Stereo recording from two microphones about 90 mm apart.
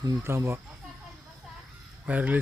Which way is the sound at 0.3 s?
30° right (ahead or behind).